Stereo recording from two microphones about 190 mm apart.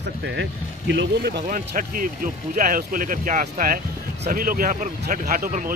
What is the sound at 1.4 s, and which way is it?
Speech, 45° right (ahead or behind).